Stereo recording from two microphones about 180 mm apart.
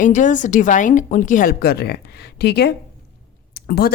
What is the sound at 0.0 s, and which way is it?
A woman's voice, 45° left (ahead or behind).